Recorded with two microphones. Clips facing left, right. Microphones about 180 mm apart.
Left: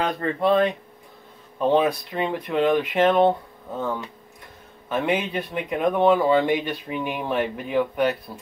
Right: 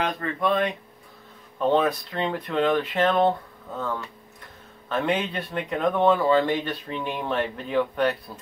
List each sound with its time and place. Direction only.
0.0 s speech: 30° left (ahead or behind)
1.7 s speech: 10° left (ahead or behind)